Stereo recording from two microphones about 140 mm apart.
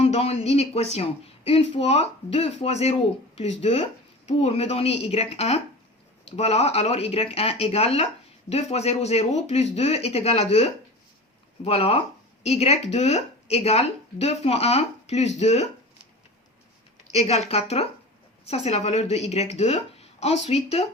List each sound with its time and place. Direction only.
0.0 s speech: 50° left (ahead or behind)
17.1 s speech: 50° left (ahead or behind)